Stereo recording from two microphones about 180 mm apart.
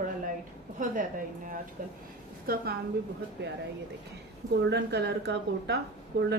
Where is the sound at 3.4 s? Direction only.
75° right (ahead or behind).